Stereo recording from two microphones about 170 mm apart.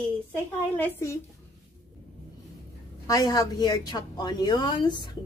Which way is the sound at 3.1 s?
20° left (ahead or behind).